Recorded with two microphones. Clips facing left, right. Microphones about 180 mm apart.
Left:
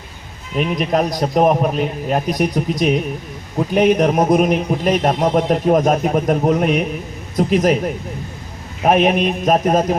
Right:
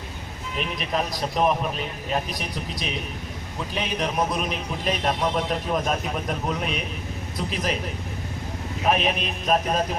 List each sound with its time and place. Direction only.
0.8 s a man's voice: 45° left (ahead or behind)
8.8 s a man's voice: 45° left (ahead or behind)